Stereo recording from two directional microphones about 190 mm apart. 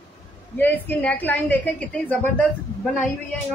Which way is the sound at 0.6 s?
10° left (ahead or behind).